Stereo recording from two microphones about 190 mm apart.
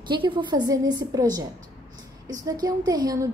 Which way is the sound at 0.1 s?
25° right (ahead or behind).